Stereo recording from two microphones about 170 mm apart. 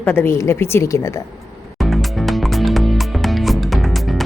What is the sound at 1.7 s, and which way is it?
Music, centre (ahead or behind).